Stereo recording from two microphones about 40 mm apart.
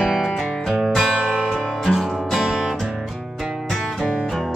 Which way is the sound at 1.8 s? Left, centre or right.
Centre.